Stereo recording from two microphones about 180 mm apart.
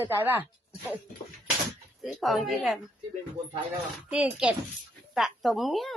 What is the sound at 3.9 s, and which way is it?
A woman's voice, 5° right (ahead or behind).